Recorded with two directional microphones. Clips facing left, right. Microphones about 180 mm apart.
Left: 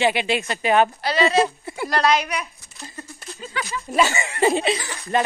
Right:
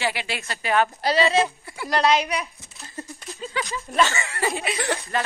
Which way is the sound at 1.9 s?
20° right (ahead or behind).